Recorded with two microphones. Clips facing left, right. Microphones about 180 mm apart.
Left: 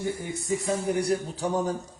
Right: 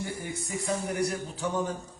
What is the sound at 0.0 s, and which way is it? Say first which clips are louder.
A man's voice: left 4 dB; 25° left (ahead or behind).